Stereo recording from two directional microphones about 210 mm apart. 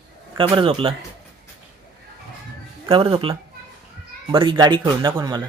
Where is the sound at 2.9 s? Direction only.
25° right (ahead or behind).